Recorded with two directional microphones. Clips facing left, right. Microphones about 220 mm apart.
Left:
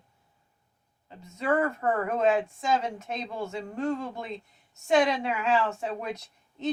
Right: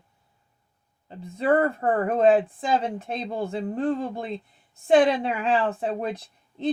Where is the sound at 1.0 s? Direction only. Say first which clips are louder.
Right 5 dB; 30° right (ahead or behind).